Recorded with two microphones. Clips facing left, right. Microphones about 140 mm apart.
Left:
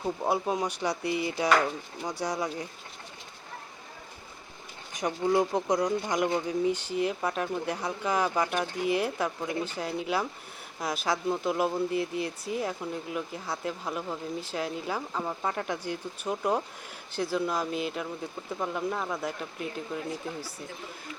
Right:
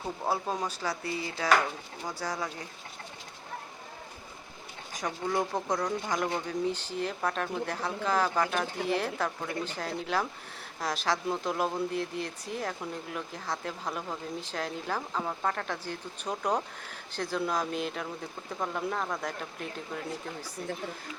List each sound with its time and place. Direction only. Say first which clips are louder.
0.3 s speech: left 2 dB; 15° left (ahead or behind)
4.9 s speech: left 5 dB; 20° left (ahead or behind); by 19.8 s 5° left (ahead or behind)